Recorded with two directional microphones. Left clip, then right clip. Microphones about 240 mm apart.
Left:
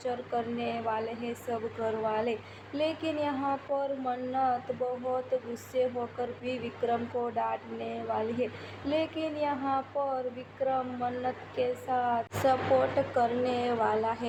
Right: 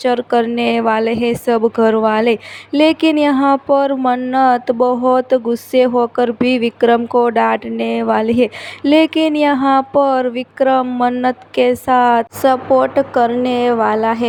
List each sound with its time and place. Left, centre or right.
0.0 s speech: right